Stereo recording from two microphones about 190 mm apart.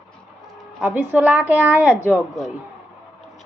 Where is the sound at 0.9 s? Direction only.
10° right (ahead or behind).